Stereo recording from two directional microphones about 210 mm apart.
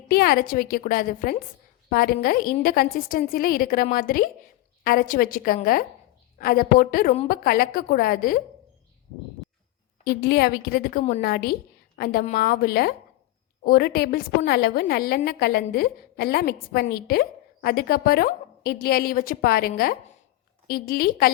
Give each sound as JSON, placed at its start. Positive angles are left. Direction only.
{"t": 0.1, "sound": "a woman's voice", "side_deg": 45}
{"t": 10.0, "sound": "a woman's voice", "side_deg": 50}